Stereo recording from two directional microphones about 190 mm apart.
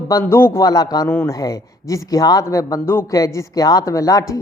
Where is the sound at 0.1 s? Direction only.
15° left (ahead or behind).